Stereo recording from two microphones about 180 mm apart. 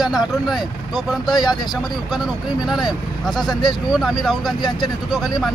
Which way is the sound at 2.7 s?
Centre (ahead or behind).